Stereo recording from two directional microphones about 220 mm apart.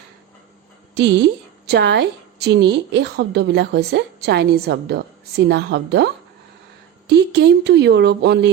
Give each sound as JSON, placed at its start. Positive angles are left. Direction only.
{"t": 1.6, "sound": "a woman's voice", "side_deg": -50}
{"t": 7.1, "sound": "a woman's voice", "side_deg": -50}